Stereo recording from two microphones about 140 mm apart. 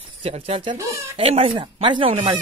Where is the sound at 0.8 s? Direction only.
20° right (ahead or behind).